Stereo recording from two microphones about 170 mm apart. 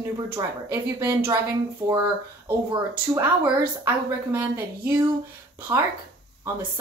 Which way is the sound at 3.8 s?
15° right (ahead or behind).